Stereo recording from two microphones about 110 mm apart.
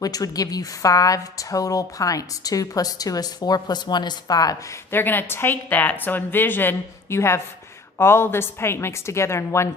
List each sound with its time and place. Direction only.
0.0 s a woman's voice: 35° left (ahead or behind)